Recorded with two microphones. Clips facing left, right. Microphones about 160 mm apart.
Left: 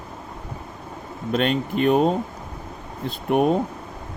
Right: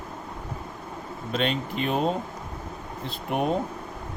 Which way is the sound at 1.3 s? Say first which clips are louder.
Left 5 dB; 50° left (ahead or behind).